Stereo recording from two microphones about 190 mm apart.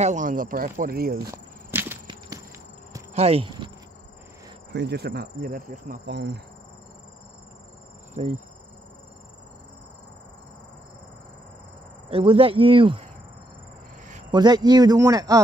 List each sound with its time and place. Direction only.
0.0 s speech: 40° right (ahead or behind)
1.7 s a sound: 10° right (ahead or behind)
2.0 s walk: 20° right (ahead or behind)
3.2 s speech: 30° right (ahead or behind)
4.7 s speech: 60° right (ahead or behind)
6.1 s speech: 65° right (ahead or behind)
8.1 s insect: 40° right (ahead or behind)
12.1 s speech: 30° right (ahead or behind)
14.3 s speech: 20° right (ahead or behind)